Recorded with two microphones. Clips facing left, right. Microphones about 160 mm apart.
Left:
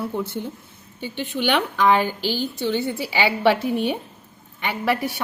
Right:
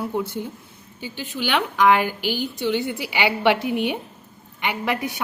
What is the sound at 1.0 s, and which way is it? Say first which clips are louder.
Speech: left 4 dB; 55° left (ahead or behind).